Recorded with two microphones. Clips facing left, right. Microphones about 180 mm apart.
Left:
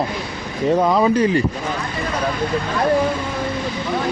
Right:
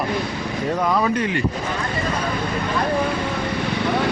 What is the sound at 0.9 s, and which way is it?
Speech, 30° left (ahead or behind).